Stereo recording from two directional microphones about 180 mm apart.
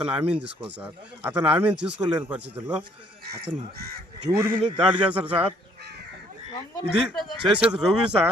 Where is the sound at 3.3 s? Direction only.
65° right (ahead or behind).